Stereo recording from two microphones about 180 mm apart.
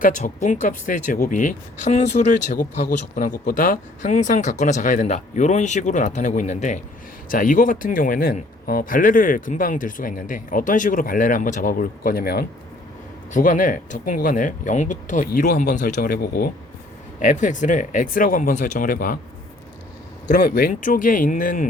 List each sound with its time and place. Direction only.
0.0 s speech: 45° left (ahead or behind)
13.3 s speech: 45° left (ahead or behind)
17.2 s speech: 45° left (ahead or behind)
20.2 s speech: 50° left (ahead or behind)